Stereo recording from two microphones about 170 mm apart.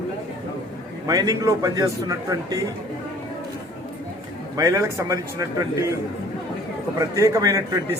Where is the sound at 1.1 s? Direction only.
20° right (ahead or behind).